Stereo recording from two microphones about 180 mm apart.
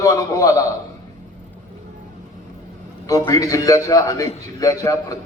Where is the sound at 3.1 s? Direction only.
20° left (ahead or behind).